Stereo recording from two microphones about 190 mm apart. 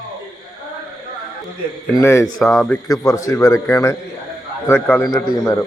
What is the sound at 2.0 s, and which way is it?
Speech, 15° left (ahead or behind).